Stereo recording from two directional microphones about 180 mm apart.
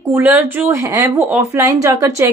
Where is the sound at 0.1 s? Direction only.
10° right (ahead or behind).